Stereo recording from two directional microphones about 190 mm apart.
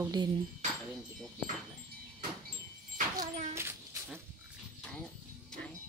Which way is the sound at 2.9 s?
40° right (ahead or behind).